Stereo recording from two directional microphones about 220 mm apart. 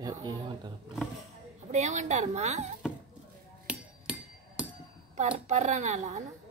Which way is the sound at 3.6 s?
5° right (ahead or behind).